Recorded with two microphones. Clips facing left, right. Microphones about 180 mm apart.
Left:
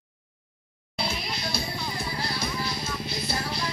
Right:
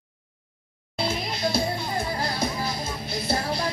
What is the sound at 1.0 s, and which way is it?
Music, 50° right (ahead or behind).